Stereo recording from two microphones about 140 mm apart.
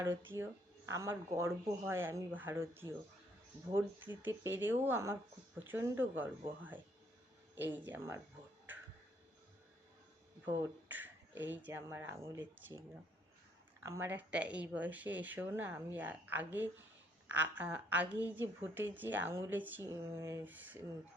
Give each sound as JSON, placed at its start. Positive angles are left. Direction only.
{"t": 0.0, "sound": "a woman's voice", "side_deg": -15}
{"t": 10.4, "sound": "a woman's voice", "side_deg": -15}
{"t": 13.8, "sound": "a woman's voice", "side_deg": -20}